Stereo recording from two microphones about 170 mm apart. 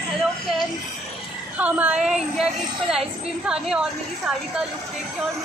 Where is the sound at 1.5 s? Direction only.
10° right (ahead or behind).